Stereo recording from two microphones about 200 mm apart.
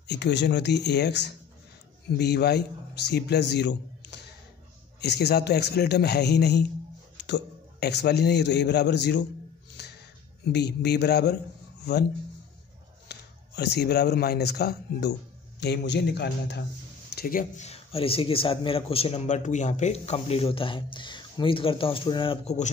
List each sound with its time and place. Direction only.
0.0 s a man's voice: 60° left (ahead or behind)
9.8 s a sound: 55° left (ahead or behind)
10.5 s a man's voice: 55° left (ahead or behind)
13.1 s a man's voice: 55° left (ahead or behind); by 22.7 s 30° left (ahead or behind)